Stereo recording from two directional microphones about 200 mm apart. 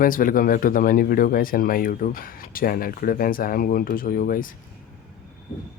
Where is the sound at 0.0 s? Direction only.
45° left (ahead or behind).